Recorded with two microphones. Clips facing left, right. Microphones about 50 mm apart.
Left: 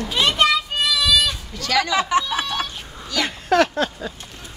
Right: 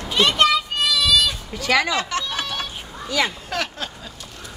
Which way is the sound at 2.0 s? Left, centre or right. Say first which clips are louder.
Left 5 dB; centre.